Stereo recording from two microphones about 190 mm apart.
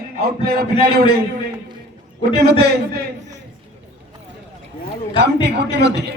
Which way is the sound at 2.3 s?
60° right (ahead or behind).